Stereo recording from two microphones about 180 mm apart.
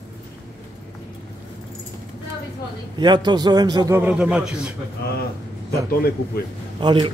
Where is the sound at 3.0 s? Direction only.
25° right (ahead or behind).